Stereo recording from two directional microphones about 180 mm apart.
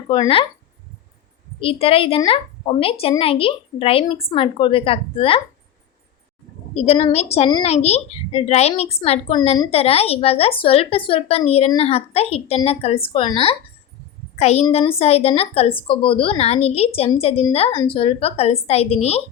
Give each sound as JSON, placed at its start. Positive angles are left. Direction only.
{"t": 0.1, "sound": "speech", "side_deg": 30}
{"t": 1.6, "sound": "a woman's voice", "side_deg": 30}
{"t": 6.7, "sound": "a woman's voice", "side_deg": 35}